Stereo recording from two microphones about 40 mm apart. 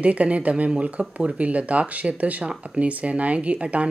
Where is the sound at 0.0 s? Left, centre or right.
Right.